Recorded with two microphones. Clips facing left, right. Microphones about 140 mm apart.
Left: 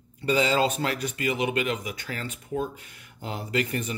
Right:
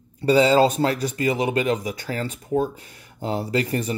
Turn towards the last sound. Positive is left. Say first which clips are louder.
# right 5 dB
turn(degrees=-35)  # may be behind; listen again after turning